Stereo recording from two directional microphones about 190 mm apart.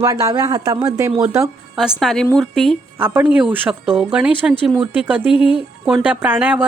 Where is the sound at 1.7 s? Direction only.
Centre (ahead or behind).